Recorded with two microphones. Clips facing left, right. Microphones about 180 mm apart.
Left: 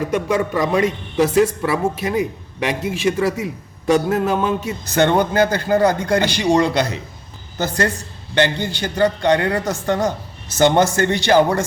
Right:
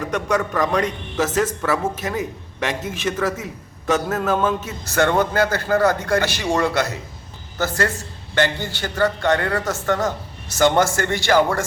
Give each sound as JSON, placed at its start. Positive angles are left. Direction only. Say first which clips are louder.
{"t": 0.1, "sound": "a man's voice", "louder": "even", "side_deg": 10}